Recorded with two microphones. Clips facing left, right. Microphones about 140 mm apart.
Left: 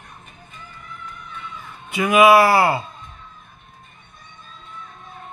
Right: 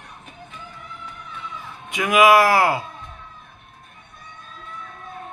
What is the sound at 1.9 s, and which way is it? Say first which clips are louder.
Speech: left 2 dB; centre (ahead or behind).